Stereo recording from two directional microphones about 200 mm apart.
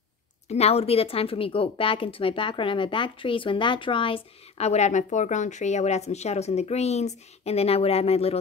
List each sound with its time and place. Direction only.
0.5 s a woman's voice: 30° left (ahead or behind)